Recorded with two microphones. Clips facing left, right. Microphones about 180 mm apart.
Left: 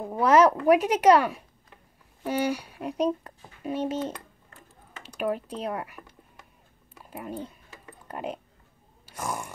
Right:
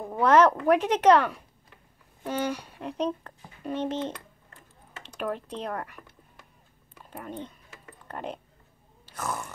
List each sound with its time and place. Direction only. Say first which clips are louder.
0.0 s speech: left 1 dB; 5° left (ahead or behind)
7.1 s speech: left 2 dB; 10° left (ahead or behind)
9.0 s grunt: even; 10° left (ahead or behind)